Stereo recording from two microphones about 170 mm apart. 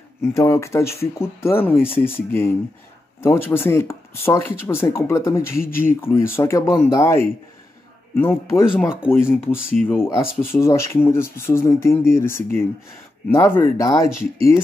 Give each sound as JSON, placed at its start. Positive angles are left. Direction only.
{"t": 0.2, "sound": "speech", "side_deg": 15}
{"t": 5.6, "sound": "speech", "side_deg": 55}
{"t": 5.9, "sound": "speech", "side_deg": 15}
{"t": 8.2, "sound": "speech", "side_deg": 15}
{"t": 9.8, "sound": "speech", "side_deg": -5}
{"t": 10.4, "sound": "speech", "side_deg": 15}